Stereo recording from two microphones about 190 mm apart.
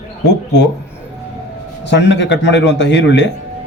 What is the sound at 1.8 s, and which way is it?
Speech, 65° left (ahead or behind).